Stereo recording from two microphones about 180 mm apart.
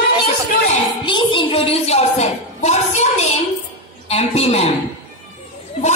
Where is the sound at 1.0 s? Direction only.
25° left (ahead or behind).